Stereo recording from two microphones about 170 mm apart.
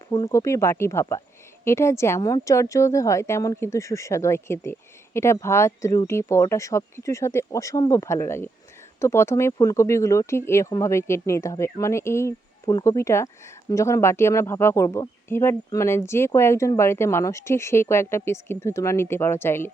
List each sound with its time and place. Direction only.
0.1 s speech: 20° left (ahead or behind)